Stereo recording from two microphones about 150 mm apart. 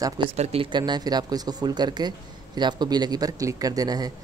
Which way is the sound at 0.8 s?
25° right (ahead or behind).